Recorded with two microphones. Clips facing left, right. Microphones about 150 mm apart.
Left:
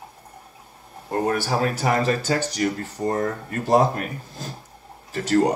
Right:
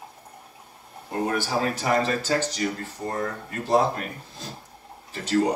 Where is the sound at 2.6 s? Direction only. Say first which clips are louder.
Left 4 dB; 55° left (ahead or behind).